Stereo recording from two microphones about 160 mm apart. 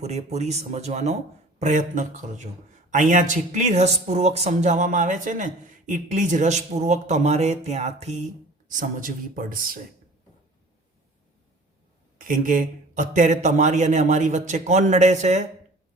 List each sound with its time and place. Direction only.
0.0 s speech: 45° right (ahead or behind)
8.7 s speech: 60° right (ahead or behind)
12.2 s speech: 60° right (ahead or behind)